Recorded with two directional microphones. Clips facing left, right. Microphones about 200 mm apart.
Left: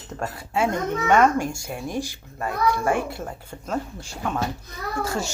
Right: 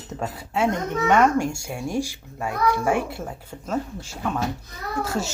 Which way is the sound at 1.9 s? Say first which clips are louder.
Right 3 dB; 10° right (ahead or behind).